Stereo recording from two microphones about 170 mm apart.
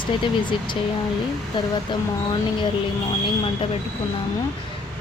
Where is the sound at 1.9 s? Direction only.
25° left (ahead or behind).